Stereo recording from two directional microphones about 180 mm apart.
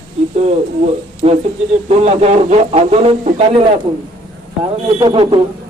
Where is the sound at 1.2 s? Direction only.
35° right (ahead or behind).